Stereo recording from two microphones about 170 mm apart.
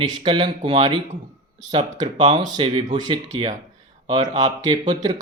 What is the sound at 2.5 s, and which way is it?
Speech, 30° right (ahead or behind).